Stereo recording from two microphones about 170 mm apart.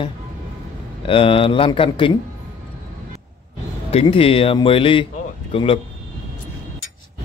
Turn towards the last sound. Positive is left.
turn(degrees=30)  # may be behind; listen again after turning